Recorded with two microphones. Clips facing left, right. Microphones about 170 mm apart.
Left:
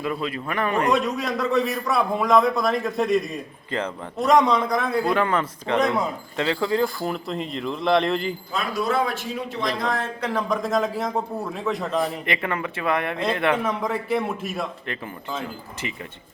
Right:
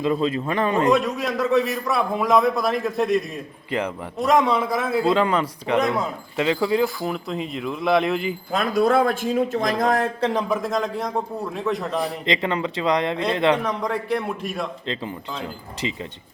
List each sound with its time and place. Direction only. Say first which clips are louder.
0.0 s speech: right 6 dB; 25° right (ahead or behind)
0.9 s a man's voice: right 2 dB; centre (ahead or behind)
3.7 s a man's voice: right 2 dB; 15° right (ahead or behind)
4.2 s a man's voice: left 1 dB; centre (ahead or behind)
5.0 s a man's voice: right 2 dB; 20° right (ahead or behind)
6.8 s a man's voice: right 1 dB; centre (ahead or behind)
8.5 s speech: right 6 dB; 50° right (ahead or behind)
10.5 s a man's voice: even; centre (ahead or behind)
12.2 s speech: right 3 dB; 20° right (ahead or behind)
13.6 s a man's voice: even; 5° left (ahead or behind)
15.4 s speech: right 2 dB; 20° right (ahead or behind)